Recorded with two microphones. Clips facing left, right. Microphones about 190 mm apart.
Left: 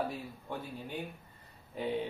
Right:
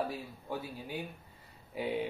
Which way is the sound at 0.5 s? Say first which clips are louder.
Right 2 dB; 5° right (ahead or behind).